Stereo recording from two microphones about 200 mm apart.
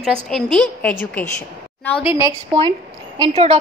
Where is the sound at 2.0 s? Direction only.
15° right (ahead or behind).